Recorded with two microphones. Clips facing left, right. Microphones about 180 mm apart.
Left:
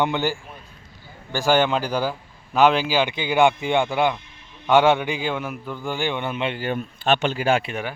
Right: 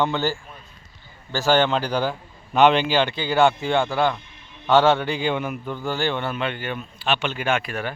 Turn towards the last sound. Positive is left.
turn(degrees=35)  # may be behind; listen again after turning